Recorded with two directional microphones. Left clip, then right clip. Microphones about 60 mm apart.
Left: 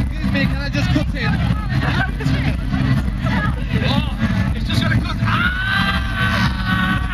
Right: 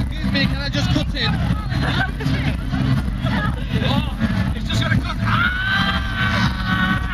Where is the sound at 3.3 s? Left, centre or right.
Left.